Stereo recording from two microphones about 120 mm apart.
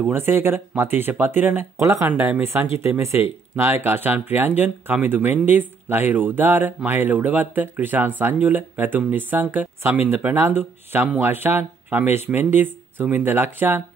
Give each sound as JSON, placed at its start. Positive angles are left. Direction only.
{"t": 0.1, "sound": "speech", "side_deg": -20}
{"t": 2.0, "sound": "speech", "side_deg": -15}